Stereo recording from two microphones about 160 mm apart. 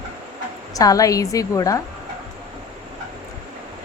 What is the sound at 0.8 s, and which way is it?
Speech, 20° left (ahead or behind).